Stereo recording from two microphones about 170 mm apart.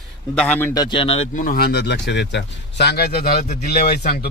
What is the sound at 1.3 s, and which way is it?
Speech, 60° left (ahead or behind).